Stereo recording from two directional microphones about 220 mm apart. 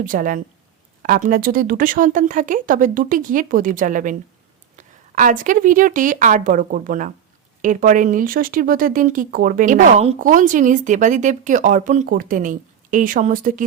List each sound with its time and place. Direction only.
0.0 s speech: 35° right (ahead or behind)